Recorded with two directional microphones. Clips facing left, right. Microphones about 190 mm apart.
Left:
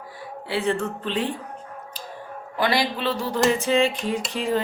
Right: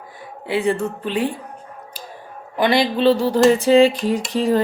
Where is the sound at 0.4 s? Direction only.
15° right (ahead or behind).